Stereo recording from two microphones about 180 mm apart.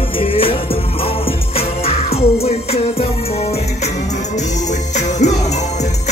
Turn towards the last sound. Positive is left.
turn(degrees=40)  # may be behind; listen again after turning